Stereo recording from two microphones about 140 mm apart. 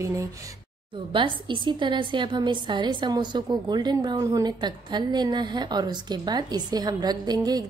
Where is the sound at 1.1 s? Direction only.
35° right (ahead or behind).